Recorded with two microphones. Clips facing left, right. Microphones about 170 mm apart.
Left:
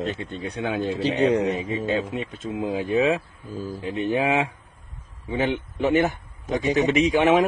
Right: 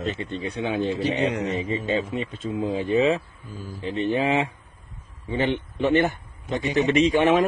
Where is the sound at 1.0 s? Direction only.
30° left (ahead or behind).